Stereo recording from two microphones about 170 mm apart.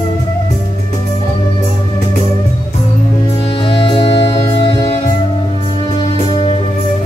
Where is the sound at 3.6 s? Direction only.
30° left (ahead or behind).